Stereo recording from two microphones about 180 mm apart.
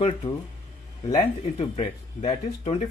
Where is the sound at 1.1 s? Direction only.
40° left (ahead or behind).